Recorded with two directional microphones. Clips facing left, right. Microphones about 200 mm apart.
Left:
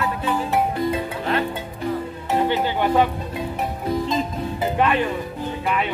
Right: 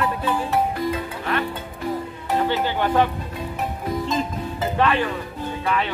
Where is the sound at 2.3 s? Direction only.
15° left (ahead or behind).